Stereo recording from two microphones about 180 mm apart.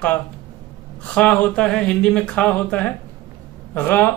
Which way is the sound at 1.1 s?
5° left (ahead or behind).